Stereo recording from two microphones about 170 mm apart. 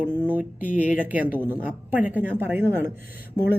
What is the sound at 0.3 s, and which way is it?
Speech, 10° right (ahead or behind).